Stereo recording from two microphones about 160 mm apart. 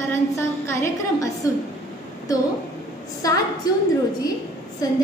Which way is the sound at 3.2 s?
20° left (ahead or behind).